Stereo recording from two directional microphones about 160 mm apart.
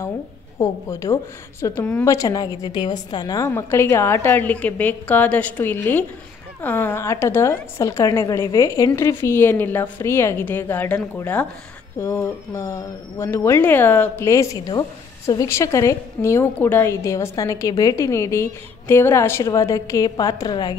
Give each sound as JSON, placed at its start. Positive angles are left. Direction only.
{"t": 0.6, "sound": "speech", "side_deg": 20}